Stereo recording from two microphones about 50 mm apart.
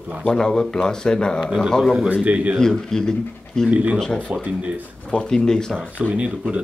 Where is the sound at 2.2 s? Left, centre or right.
Right.